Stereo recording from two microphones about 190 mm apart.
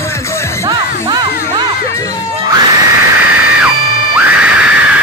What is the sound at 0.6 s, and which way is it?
Music, 25° right (ahead or behind).